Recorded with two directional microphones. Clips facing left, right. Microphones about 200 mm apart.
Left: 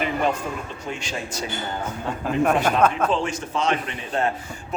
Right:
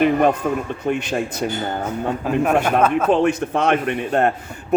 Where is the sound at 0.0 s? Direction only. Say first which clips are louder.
Right 8 dB; 55° right (ahead or behind).